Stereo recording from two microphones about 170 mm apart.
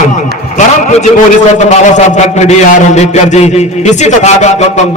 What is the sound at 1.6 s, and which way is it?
A man's voice, 45° left (ahead or behind).